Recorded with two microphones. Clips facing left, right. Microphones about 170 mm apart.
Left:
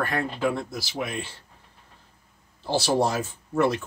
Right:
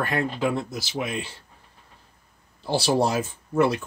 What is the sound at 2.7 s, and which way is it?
Speech, 15° right (ahead or behind).